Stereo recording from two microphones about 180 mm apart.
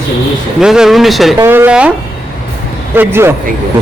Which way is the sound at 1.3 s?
10° right (ahead or behind).